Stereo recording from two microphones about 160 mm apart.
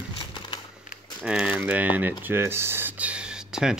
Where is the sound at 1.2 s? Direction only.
5° right (ahead or behind).